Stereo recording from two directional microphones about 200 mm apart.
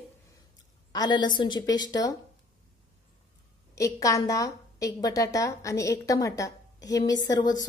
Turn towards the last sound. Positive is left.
turn(degrees=20)  # may be behind; listen again after turning